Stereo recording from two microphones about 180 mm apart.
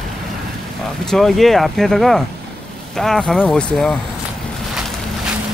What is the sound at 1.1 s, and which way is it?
Speech, centre (ahead or behind).